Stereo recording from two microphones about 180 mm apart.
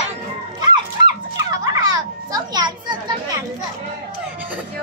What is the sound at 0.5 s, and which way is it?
Children playing, 20° right (ahead or behind).